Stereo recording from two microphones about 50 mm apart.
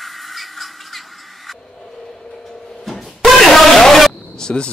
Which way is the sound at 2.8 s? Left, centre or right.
Centre.